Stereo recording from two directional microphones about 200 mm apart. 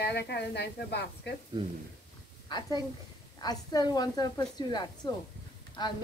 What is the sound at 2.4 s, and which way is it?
A woman's voice, 20° left (ahead or behind).